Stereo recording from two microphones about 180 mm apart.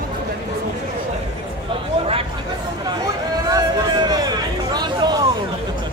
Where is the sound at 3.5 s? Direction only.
20° right (ahead or behind).